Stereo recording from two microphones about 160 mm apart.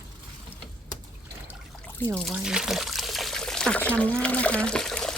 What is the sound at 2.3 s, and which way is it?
Water, 5° right (ahead or behind).